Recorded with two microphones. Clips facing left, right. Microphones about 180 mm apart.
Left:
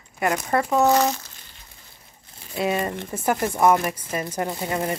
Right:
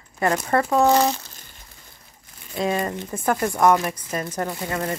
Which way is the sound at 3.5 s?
10° left (ahead or behind).